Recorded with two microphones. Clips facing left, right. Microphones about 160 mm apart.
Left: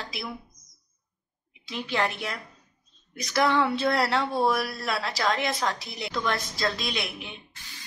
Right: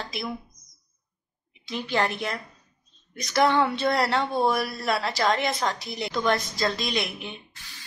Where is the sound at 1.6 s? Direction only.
Centre (ahead or behind).